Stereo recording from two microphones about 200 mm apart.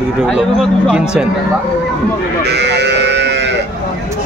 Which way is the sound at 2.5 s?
60° right (ahead or behind).